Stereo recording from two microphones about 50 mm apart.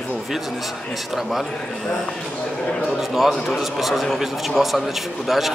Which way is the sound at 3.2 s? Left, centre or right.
Centre.